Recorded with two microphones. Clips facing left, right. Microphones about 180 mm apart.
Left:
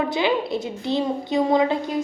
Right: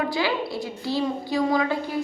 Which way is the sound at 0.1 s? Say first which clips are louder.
Left 4 dB; 20° left (ahead or behind).